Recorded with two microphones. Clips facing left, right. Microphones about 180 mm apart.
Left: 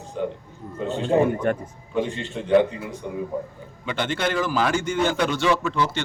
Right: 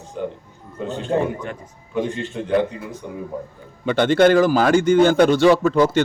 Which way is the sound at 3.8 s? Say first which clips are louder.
Right 11 dB; 40° right (ahead or behind).